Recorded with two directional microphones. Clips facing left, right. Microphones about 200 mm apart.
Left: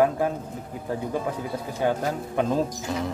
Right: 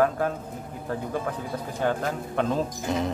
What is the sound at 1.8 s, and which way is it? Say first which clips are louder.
Speech: left 2 dB; 10° left (ahead or behind).